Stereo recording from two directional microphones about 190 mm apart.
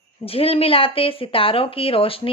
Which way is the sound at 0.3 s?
30° left (ahead or behind).